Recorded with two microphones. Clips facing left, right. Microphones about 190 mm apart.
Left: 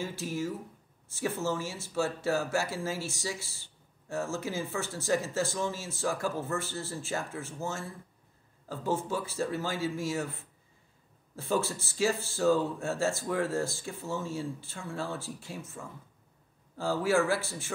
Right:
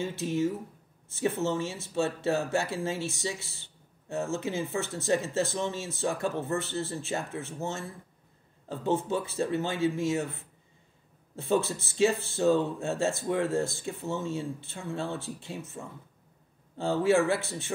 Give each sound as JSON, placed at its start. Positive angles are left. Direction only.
{"t": 0.0, "sound": "speech", "side_deg": -25}
{"t": 8.6, "sound": "speech", "side_deg": -20}
{"t": 11.3, "sound": "speech", "side_deg": -20}